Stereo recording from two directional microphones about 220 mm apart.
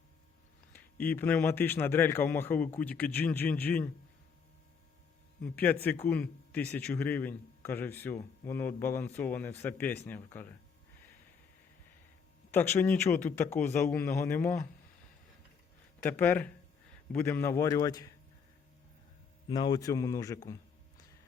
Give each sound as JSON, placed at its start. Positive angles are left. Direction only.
{"t": 0.7, "sound": "a man's voice", "side_deg": 10}
{"t": 5.4, "sound": "a man's voice", "side_deg": 10}
{"t": 12.5, "sound": "a man's voice", "side_deg": 10}
{"t": 16.0, "sound": "a man's voice", "side_deg": 10}
{"t": 19.5, "sound": "a man's voice", "side_deg": 20}